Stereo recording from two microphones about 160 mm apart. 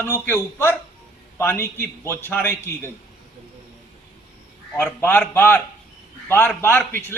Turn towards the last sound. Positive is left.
turn(degrees=15)  # may be behind; listen again after turning